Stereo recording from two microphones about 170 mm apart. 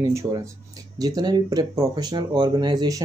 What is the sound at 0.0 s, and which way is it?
Speech, 15° right (ahead or behind).